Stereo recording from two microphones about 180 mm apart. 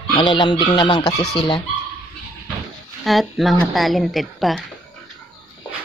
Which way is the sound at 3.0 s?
Centre (ahead or behind).